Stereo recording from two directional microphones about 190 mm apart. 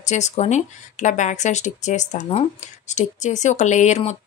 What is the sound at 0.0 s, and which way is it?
Speech, 35° left (ahead or behind).